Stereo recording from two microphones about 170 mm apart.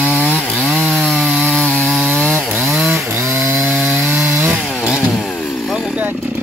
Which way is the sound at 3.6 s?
Centre (ahead or behind).